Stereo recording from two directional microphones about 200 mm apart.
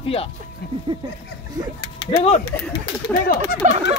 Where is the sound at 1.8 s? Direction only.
25° left (ahead or behind).